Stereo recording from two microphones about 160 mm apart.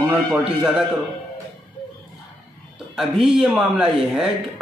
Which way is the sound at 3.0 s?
Centre (ahead or behind).